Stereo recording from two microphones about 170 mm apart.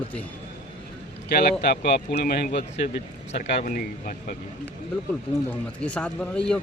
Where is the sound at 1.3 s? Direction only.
60° left (ahead or behind).